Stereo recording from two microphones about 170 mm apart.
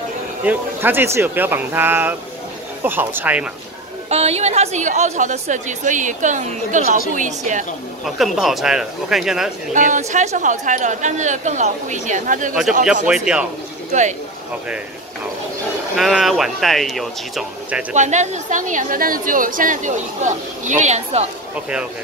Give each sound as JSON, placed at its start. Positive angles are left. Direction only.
{"t": 0.5, "sound": "speech", "side_deg": -10}
{"t": 4.1, "sound": "a woman's voice", "side_deg": -40}
{"t": 8.0, "sound": "speech", "side_deg": 0}
{"t": 9.8, "sound": "a woman's voice", "side_deg": -45}
{"t": 13.0, "sound": "speech", "side_deg": -5}
{"t": 16.0, "sound": "speech", "side_deg": 0}
{"t": 17.9, "sound": "a woman's voice", "side_deg": -45}